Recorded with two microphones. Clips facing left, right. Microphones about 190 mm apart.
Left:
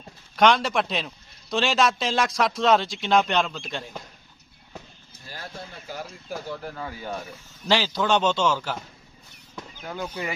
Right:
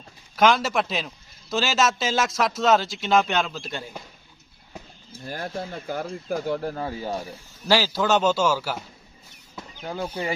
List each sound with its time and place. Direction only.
0.3 s a man's voice: centre (ahead or behind)
5.2 s speech: 50° right (ahead or behind)
6.6 s speech: 35° right (ahead or behind)
7.7 s a man's voice: 5° right (ahead or behind)
9.8 s speech: 30° right (ahead or behind)